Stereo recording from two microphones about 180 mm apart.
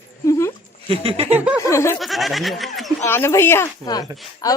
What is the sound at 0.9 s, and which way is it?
Speech, 35° right (ahead or behind).